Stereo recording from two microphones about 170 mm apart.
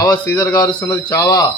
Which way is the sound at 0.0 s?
20° left (ahead or behind).